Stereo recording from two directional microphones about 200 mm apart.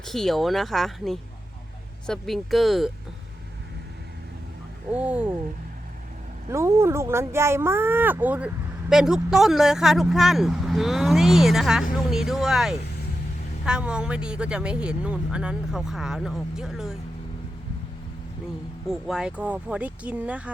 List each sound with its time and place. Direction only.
0.0 s speech: centre (ahead or behind)
4.9 s speech: 5° right (ahead or behind)
6.5 s speech: 15° right (ahead or behind)
18.9 s speech: centre (ahead or behind)